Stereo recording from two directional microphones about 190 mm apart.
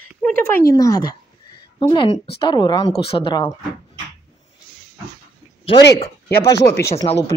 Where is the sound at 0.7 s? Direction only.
15° left (ahead or behind).